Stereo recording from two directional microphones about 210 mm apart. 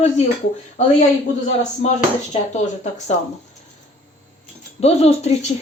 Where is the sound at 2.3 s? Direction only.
35° left (ahead or behind).